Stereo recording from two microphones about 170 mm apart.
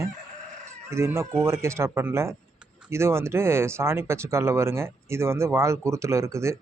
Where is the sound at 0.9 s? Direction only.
15° right (ahead or behind).